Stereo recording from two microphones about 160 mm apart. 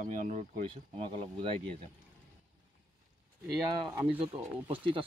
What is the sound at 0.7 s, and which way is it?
Speech, 35° right (ahead or behind).